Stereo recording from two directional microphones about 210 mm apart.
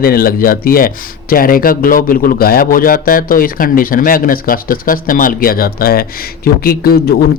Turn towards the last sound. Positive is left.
turn(degrees=45)  # may be behind; listen again after turning